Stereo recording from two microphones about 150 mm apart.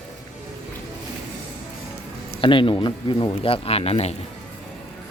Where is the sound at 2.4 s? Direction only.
35° left (ahead or behind).